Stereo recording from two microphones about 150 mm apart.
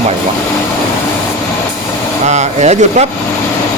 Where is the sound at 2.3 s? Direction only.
50° right (ahead or behind).